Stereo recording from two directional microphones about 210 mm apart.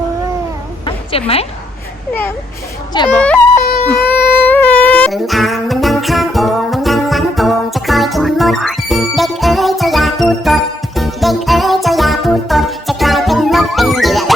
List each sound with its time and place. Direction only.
1.1 s a woman's voice: 25° left (ahead or behind)
3.2 s speech: 5° left (ahead or behind)
3.8 s music: 10° left (ahead or behind)